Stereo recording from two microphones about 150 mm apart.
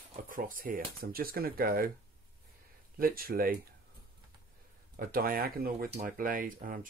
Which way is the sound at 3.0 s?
80° right.